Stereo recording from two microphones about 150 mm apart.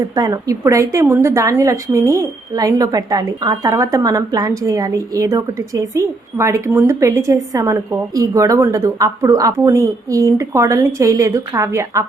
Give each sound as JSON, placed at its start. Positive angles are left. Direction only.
{"t": 0.2, "sound": "a woman's voice", "side_deg": -25}